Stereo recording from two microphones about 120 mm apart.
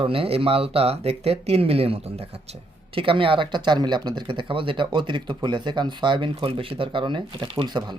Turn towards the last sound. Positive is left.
turn(degrees=-40)  # may be behind; listen again after turning